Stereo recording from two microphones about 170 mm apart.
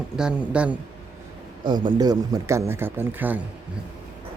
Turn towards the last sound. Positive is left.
turn(degrees=-10)  # may be behind; listen again after turning